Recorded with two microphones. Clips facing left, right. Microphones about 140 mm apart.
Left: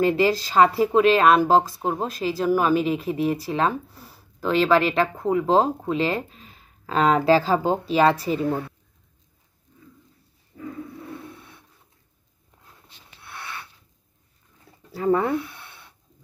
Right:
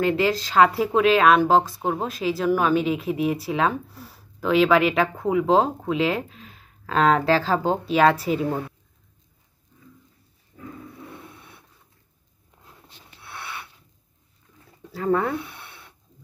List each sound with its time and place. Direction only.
0.0 s a woman's voice: 5° left (ahead or behind)
15.0 s speech: 10° left (ahead or behind)